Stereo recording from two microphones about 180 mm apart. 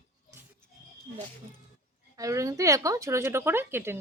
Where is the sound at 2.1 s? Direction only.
20° right (ahead or behind).